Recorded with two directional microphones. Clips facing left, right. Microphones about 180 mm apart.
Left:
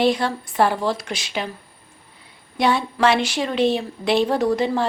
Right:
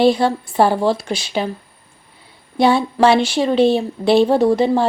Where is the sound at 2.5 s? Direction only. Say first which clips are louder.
Right 6 dB; 30° right (ahead or behind).